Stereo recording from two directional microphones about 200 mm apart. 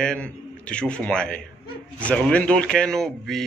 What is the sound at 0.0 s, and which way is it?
A man's voice, 5° left (ahead or behind).